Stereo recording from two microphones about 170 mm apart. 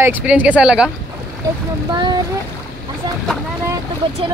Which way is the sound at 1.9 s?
25° right (ahead or behind).